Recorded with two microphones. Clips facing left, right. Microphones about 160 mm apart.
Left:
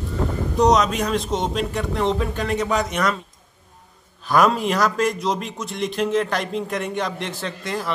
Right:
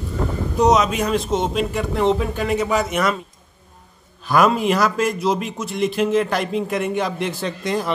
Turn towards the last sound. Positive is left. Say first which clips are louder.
# right 4 dB
turn(degrees=-20)  # may be behind; listen again after turning